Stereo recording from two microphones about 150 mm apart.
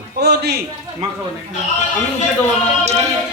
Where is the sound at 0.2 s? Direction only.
90° right.